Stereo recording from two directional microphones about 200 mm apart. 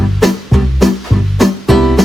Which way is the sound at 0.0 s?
Centre (ahead or behind).